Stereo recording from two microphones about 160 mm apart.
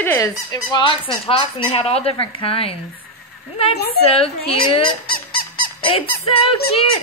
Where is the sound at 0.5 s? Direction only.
30° left (ahead or behind).